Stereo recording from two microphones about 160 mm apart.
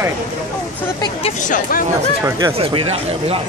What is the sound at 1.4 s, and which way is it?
Speech, 60° left (ahead or behind).